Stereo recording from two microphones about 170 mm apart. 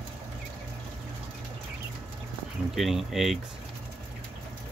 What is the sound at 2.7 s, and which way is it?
Speech, centre (ahead or behind).